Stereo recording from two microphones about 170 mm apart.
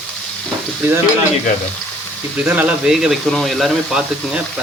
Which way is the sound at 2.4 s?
10° right (ahead or behind).